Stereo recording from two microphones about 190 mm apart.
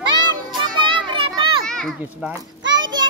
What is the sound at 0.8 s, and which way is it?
Children playing, 25° right (ahead or behind).